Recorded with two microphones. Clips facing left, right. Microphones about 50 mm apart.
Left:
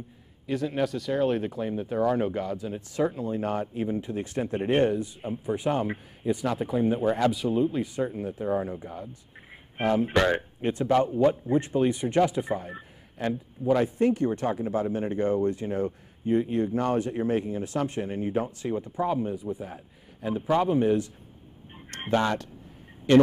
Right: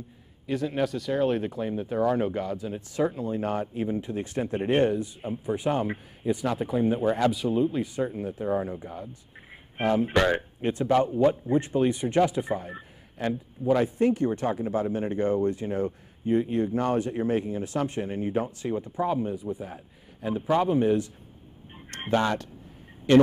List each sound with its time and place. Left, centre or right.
0.5 s speech: centre
13.2 s a man's voice: right